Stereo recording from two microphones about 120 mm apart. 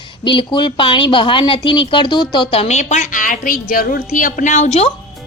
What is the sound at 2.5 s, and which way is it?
A woman's voice, 60° left (ahead or behind).